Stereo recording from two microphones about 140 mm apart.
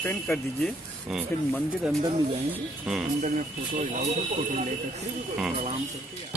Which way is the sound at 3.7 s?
55° right (ahead or behind).